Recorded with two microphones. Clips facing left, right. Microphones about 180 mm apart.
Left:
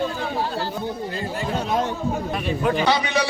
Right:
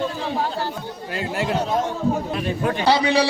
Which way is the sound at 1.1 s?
80° right.